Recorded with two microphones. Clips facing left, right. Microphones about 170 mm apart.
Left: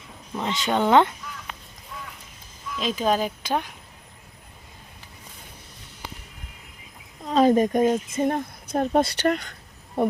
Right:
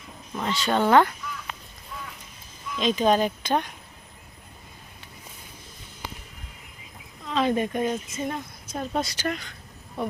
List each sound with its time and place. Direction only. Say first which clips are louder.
0.4 s speech: even; 20° left (ahead or behind)
2.7 s speech: right 2 dB; 5° left (ahead or behind)
7.3 s speech: left 6 dB; 40° left (ahead or behind)